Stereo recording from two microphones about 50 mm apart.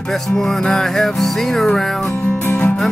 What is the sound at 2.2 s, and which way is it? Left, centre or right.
Music, left.